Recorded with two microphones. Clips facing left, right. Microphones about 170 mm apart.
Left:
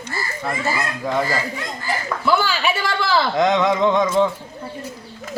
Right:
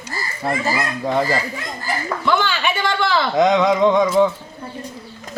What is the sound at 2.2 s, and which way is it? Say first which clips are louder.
A man's voice: left 1 dB; 5° left (ahead or behind).